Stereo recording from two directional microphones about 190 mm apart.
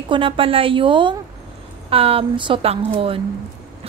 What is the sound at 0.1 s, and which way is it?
A woman's voice, 30° right (ahead or behind).